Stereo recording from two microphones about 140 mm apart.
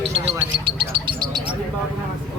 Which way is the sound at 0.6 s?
35° right (ahead or behind).